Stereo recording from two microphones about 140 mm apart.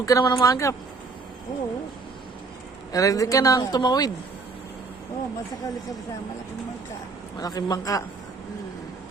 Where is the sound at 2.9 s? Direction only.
25° left (ahead or behind).